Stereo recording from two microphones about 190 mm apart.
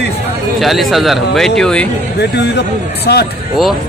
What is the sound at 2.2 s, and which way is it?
Speech, 60° left (ahead or behind).